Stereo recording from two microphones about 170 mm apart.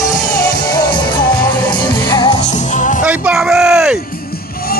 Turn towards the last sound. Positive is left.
turn(degrees=-5)  # may be behind; listen again after turning